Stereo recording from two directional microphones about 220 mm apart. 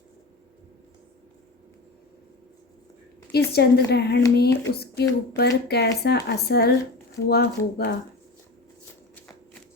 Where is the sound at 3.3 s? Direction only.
45° left (ahead or behind).